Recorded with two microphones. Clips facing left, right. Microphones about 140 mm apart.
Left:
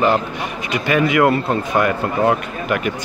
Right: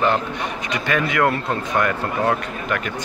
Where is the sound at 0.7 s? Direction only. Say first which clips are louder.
Left 6 dB; 10° left (ahead or behind).